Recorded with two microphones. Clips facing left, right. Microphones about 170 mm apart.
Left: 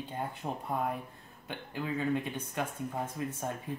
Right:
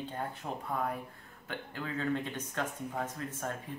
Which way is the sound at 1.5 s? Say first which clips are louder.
Left 3 dB; 15° left (ahead or behind).